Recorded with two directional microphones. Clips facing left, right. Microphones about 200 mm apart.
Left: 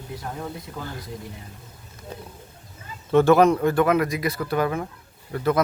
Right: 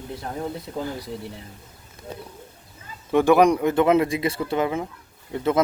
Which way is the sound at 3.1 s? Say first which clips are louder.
Even; 15° right (ahead or behind).